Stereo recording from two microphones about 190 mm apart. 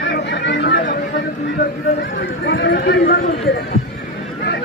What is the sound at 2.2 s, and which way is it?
Speech, 65° left (ahead or behind).